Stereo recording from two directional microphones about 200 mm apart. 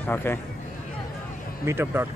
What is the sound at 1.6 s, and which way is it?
Speech, 10° right (ahead or behind).